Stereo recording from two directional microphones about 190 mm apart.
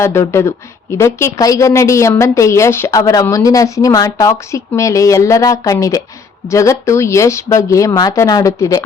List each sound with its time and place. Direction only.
0.0 s a woman's voice: 15° left (ahead or behind)